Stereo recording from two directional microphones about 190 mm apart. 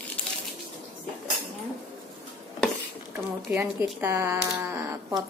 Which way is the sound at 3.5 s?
15° right (ahead or behind).